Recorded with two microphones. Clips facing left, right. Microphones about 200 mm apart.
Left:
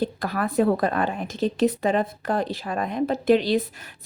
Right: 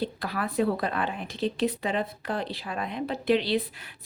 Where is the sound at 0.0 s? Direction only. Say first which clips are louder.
Left 5 dB; 45° left (ahead or behind).